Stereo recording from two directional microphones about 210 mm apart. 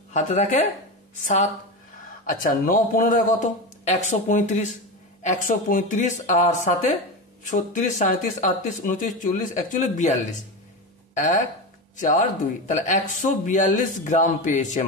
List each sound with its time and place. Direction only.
0.1 s speech: 35° left (ahead or behind)
12.6 s speech: 35° left (ahead or behind)